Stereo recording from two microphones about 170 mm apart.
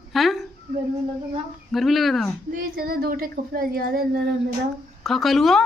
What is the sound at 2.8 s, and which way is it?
Speech, 60° right (ahead or behind).